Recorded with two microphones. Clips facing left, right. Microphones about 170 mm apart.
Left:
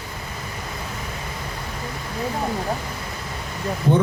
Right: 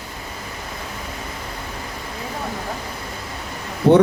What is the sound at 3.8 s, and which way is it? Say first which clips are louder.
Speech: right 7 dB; 65° right (ahead or behind).